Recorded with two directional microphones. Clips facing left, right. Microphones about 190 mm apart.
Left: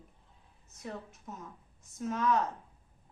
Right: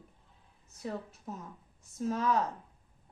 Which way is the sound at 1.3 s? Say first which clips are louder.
Right 4 dB; 35° right (ahead or behind).